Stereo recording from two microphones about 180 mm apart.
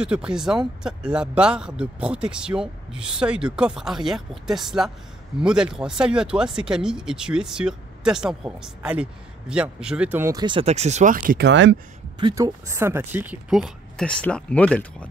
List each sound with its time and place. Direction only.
0.0 s speech: 5° right (ahead or behind); by 11.4 s 50° right (ahead or behind)
11.4 s speech: 85° right
12.2 s speech: 25° right (ahead or behind); by 15.0 s 5° left (ahead or behind)